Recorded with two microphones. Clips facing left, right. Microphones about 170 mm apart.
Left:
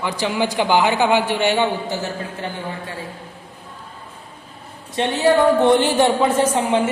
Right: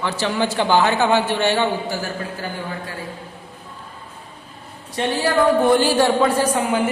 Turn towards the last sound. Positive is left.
turn(degrees=25)  # may be behind; listen again after turning